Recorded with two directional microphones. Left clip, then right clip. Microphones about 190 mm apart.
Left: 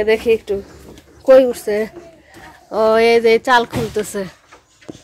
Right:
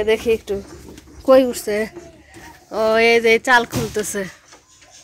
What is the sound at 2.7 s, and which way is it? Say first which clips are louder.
Speech: left 2 dB; 10° left (ahead or behind).